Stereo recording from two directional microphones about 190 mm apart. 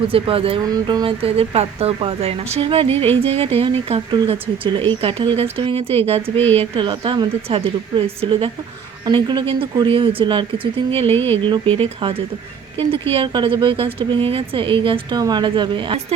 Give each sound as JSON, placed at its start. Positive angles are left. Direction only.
{"t": 0.1, "sound": "a woman's voice", "side_deg": -30}